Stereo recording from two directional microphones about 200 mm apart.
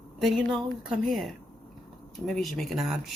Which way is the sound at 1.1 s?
Centre (ahead or behind).